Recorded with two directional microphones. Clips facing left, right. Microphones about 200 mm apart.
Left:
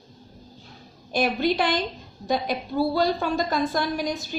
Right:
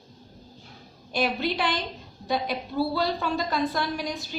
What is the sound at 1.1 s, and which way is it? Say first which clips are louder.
Speech: left 4 dB; 45° left (ahead or behind).